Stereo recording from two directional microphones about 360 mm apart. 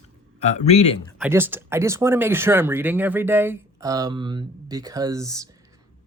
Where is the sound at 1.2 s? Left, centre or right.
Centre.